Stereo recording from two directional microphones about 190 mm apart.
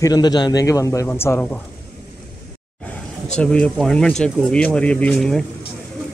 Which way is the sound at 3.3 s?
5° left (ahead or behind).